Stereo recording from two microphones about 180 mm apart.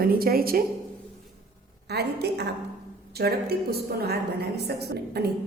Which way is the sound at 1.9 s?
65° right (ahead or behind).